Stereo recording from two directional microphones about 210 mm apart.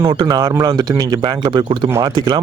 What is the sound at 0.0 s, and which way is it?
Speech, 20° right (ahead or behind).